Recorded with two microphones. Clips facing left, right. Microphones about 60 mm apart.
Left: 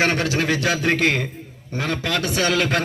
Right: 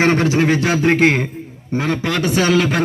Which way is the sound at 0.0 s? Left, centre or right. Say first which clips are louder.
Right 6 dB; right.